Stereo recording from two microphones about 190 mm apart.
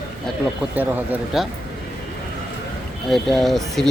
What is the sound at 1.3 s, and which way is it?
Speech, 5° right (ahead or behind).